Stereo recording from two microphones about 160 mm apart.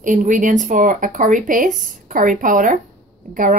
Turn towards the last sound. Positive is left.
turn(degrees=-55)  # may be behind; listen again after turning